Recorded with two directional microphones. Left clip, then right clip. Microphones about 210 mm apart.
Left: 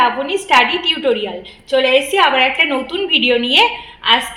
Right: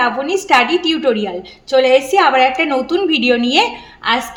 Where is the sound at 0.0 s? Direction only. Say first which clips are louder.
Left 1 dB; 60° right (ahead or behind).